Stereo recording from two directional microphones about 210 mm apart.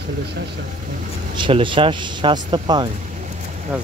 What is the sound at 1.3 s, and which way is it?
Speech, 25° right (ahead or behind).